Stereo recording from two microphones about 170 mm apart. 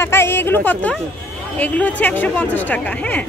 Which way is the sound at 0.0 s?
15° left (ahead or behind).